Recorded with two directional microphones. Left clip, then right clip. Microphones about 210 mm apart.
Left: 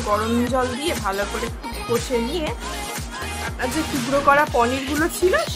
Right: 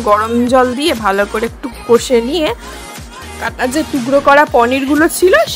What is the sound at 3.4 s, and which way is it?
Speech, 30° right (ahead or behind).